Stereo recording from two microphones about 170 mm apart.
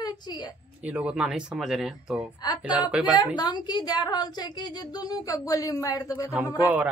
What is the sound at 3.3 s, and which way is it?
A child's voice, 25° left (ahead or behind).